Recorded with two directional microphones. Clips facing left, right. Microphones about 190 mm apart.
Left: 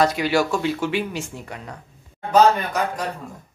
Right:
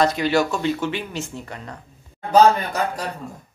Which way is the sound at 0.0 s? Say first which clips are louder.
Even; 10° left (ahead or behind).